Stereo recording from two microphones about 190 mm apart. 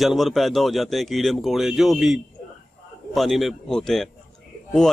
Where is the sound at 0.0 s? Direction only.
Centre (ahead or behind).